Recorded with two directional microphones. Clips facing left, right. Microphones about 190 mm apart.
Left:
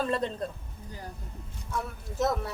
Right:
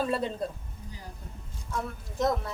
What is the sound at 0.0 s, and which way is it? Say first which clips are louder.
Speech: even; 5° right (ahead or behind).